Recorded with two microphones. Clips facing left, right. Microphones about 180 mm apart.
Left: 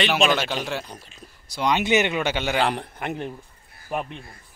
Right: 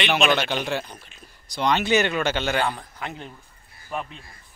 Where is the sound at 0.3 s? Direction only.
Centre (ahead or behind).